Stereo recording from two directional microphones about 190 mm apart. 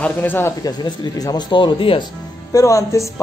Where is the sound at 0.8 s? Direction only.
20° left (ahead or behind).